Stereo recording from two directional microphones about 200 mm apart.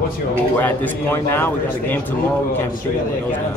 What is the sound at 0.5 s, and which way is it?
A man's voice, 10° left (ahead or behind).